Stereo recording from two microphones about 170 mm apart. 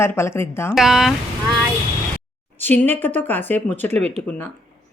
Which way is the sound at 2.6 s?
10° left (ahead or behind).